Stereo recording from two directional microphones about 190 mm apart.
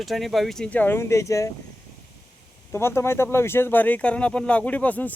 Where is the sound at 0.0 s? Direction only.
Centre (ahead or behind); by 1.5 s 15° left (ahead or behind).